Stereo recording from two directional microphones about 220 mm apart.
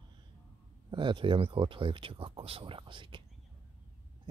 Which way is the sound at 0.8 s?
20° right (ahead or behind).